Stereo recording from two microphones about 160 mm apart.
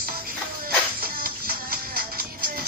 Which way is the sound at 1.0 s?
65° right (ahead or behind).